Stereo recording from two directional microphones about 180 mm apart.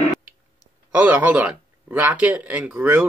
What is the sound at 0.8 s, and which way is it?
A man's voice, 10° right (ahead or behind).